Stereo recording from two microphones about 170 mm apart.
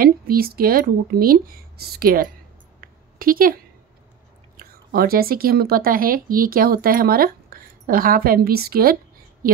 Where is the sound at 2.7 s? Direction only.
60° right (ahead or behind).